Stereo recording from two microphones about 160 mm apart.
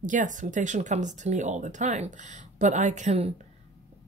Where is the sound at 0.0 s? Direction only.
55° right (ahead or behind).